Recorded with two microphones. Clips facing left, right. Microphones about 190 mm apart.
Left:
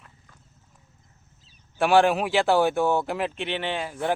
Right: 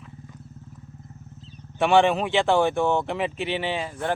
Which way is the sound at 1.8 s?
Centre (ahead or behind).